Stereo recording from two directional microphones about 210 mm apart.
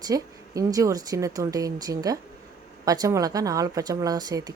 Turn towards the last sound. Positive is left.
turn(degrees=-20)  # may be behind; listen again after turning